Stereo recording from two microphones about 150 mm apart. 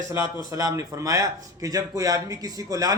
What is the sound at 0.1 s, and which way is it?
A man's voice, 20° right (ahead or behind).